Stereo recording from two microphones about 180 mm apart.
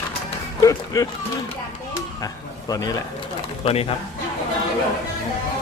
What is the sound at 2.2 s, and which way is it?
Speech, 20° left (ahead or behind).